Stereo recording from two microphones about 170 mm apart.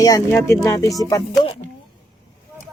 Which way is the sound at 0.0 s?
15° left (ahead or behind).